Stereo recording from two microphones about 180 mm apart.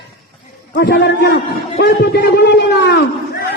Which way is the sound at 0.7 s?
65° left (ahead or behind).